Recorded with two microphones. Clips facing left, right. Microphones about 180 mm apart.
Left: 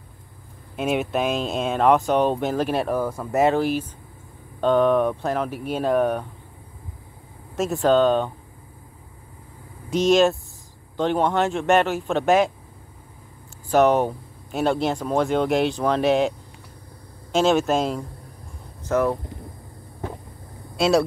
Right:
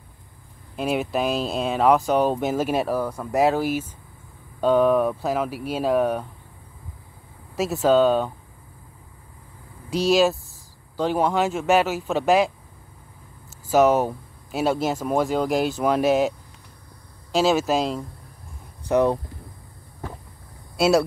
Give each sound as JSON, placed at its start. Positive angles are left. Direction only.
{"t": 0.7, "sound": "speech", "side_deg": 0}
{"t": 7.5, "sound": "speech", "side_deg": 0}
{"t": 10.0, "sound": "speech", "side_deg": 0}
{"t": 13.7, "sound": "speech", "side_deg": -5}
{"t": 18.9, "sound": "speech", "side_deg": -15}
{"t": 20.7, "sound": "speech", "side_deg": 0}